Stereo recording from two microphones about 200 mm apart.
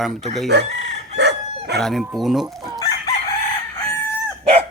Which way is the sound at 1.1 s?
55° right (ahead or behind).